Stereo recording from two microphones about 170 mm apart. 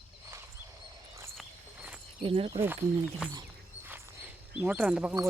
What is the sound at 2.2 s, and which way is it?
Speech, 35° right (ahead or behind).